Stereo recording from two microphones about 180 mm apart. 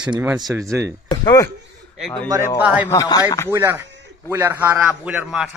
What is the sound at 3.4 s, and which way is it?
A man's voice, 15° right (ahead or behind).